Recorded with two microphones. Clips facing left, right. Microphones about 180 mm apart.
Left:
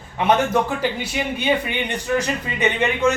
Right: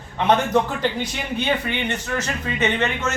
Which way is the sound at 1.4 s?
10° left (ahead or behind).